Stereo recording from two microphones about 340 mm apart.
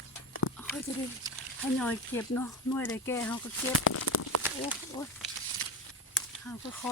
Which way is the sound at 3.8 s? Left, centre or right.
Left.